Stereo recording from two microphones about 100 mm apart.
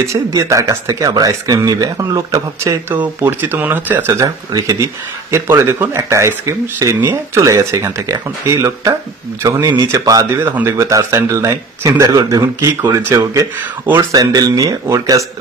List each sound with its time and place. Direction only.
0.0 s speech: 30° right (ahead or behind)
2.9 s speech: 20° right (ahead or behind)
4.2 s speech: 35° right (ahead or behind)
10.4 s speech: 20° right (ahead or behind)
10.7 s speech: 35° right (ahead or behind)